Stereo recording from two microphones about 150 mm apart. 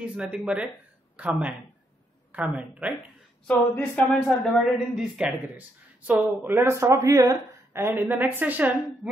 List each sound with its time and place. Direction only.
0.0 s a woman's voice: 10° right (ahead or behind)
3.4 s speech: 10° left (ahead or behind)
4.6 s a woman's voice: centre (ahead or behind)